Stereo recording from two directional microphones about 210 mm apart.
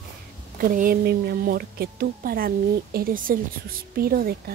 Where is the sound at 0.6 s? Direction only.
40° right (ahead or behind).